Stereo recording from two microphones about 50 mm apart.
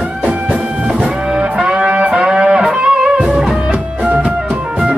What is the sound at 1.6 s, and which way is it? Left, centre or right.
Music, centre.